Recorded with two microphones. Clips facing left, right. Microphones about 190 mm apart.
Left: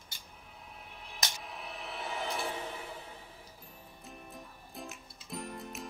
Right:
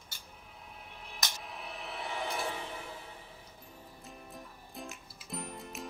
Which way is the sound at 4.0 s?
Centre (ahead or behind).